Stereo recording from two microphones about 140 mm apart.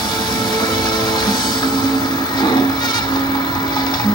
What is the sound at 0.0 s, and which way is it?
Music, 30° left (ahead or behind).